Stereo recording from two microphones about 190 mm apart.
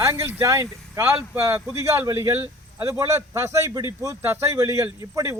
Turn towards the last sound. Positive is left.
turn(degrees=-15)  # may be behind; listen again after turning